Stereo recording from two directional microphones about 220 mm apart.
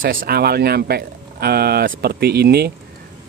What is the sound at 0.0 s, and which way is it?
Speech, 40° right (ahead or behind).